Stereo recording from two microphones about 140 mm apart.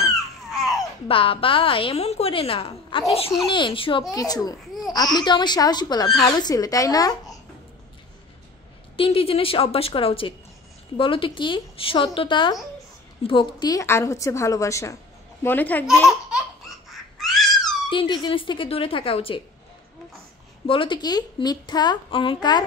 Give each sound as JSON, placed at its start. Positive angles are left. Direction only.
{"t": 0.1, "sound": "a sound", "side_deg": 0}
{"t": 1.0, "sound": "a woman's voice", "side_deg": 40}
{"t": 4.1, "sound": "a woman's voice", "side_deg": 25}
{"t": 8.9, "sound": "a woman's voice", "side_deg": 40}
{"t": 16.9, "sound": "a sound", "side_deg": 0}
{"t": 17.8, "sound": "a woman's voice", "side_deg": 35}
{"t": 20.6, "sound": "a woman's voice", "side_deg": 40}